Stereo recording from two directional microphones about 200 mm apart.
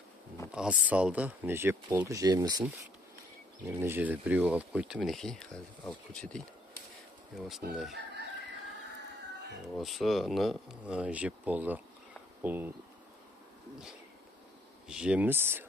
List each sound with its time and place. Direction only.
0.5 s speech: 5° right (ahead or behind)
3.6 s speech: 10° right (ahead or behind)
9.8 s speech: centre (ahead or behind)
14.9 s speech: 5° right (ahead or behind)